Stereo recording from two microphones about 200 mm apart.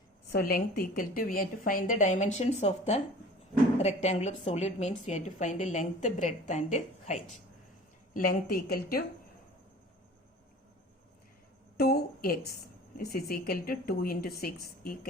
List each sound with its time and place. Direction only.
0.3 s a woman's voice: 50° left (ahead or behind)
8.1 s a woman's voice: 45° left (ahead or behind)
11.8 s a woman's voice: 50° left (ahead or behind)